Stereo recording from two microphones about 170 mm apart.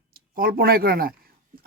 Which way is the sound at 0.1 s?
60° right (ahead or behind).